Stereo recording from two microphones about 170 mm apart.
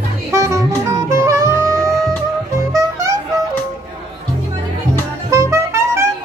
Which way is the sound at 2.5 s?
20° right (ahead or behind).